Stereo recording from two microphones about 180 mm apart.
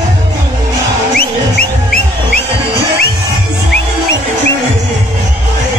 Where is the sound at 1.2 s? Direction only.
55° left (ahead or behind).